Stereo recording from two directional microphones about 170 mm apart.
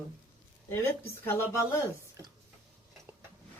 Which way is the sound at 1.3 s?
15° left (ahead or behind).